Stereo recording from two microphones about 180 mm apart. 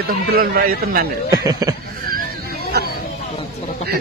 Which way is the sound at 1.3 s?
20° right (ahead or behind).